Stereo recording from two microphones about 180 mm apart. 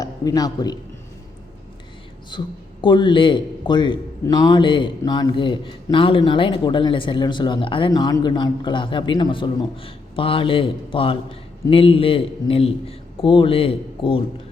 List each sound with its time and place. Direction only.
0.0 s a man's voice: 20° left (ahead or behind)
2.3 s a man's voice: 25° left (ahead or behind)